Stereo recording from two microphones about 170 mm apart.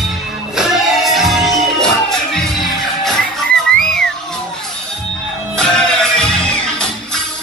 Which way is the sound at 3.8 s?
5° left (ahead or behind).